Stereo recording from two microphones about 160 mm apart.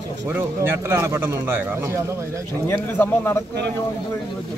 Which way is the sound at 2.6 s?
15° left (ahead or behind).